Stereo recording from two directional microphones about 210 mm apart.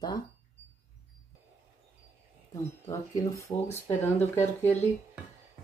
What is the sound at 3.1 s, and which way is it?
Speech, 15° left (ahead or behind).